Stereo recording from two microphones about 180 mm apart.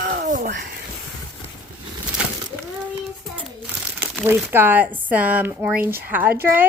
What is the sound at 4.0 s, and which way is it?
Speech, 10° right (ahead or behind).